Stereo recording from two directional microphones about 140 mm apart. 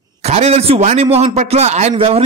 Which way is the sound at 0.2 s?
50° right (ahead or behind).